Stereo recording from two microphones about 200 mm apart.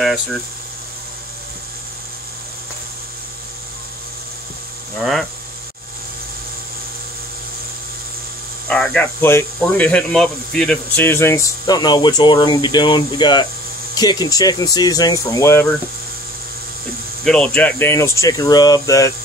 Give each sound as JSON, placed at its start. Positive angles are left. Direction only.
{"t": 0.0, "sound": "speech", "side_deg": 0}
{"t": 8.6, "sound": "speech", "side_deg": 5}
{"t": 17.2, "sound": "speech", "side_deg": 5}